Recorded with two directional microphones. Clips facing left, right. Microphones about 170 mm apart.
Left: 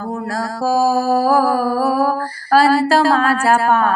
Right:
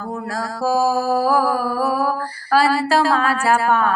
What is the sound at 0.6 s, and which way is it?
Mantra, 35° left (ahead or behind).